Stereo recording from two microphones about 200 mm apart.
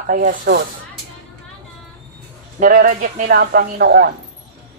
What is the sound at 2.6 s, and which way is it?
Speech, 45° right (ahead or behind).